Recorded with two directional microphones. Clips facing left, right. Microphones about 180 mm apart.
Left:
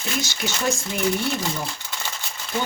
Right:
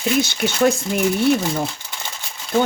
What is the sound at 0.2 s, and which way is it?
Speech, 60° right (ahead or behind).